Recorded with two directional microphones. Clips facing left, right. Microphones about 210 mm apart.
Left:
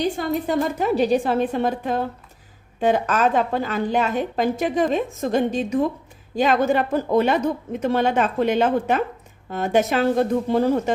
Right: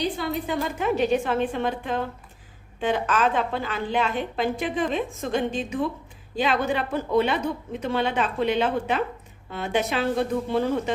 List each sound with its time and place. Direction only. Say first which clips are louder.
0.0 s a woman's voice: left 4 dB; 45° left (ahead or behind)